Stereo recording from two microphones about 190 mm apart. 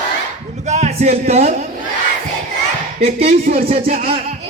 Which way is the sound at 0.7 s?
35° right (ahead or behind).